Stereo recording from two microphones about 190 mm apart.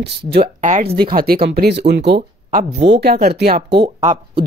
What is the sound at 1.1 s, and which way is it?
Speech, 50° right (ahead or behind).